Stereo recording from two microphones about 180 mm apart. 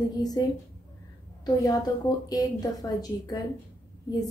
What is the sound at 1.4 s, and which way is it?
A woman's voice, 20° left (ahead or behind).